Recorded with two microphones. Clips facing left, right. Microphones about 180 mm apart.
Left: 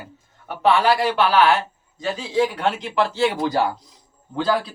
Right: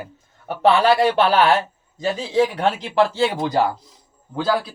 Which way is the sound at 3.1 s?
25° right (ahead or behind).